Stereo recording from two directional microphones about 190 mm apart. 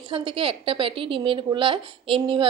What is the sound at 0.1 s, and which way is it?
A woman's voice, 25° right (ahead or behind).